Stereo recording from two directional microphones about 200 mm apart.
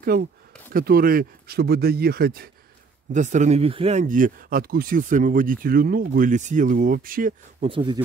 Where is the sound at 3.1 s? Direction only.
35° right (ahead or behind).